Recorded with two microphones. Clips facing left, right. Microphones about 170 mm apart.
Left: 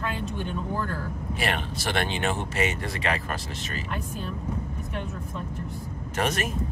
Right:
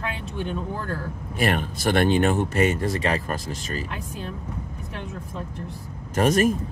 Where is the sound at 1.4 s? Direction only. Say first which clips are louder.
Right 7 dB; 45° right (ahead or behind).